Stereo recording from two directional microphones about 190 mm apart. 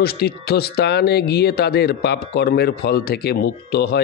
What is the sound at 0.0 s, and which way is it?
Speech, 55° left (ahead or behind).